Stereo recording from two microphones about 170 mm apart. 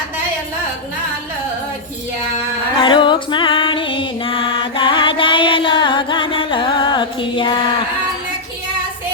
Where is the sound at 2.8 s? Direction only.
30° left (ahead or behind).